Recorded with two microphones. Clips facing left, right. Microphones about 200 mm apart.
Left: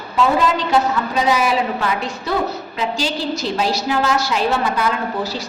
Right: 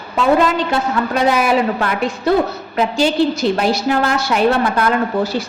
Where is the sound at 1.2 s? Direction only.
55° right (ahead or behind).